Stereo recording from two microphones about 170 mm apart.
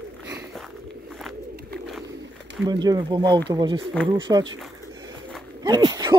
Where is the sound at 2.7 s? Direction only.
25° right (ahead or behind).